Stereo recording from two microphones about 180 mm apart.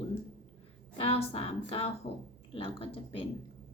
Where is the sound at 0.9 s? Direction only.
35° left (ahead or behind).